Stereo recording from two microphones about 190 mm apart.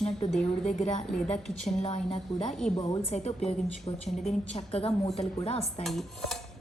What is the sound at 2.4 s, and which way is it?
Speech, 5° left (ahead or behind).